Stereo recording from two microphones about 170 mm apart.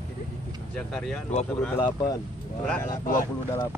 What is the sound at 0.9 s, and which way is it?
Speech, 5° left (ahead or behind).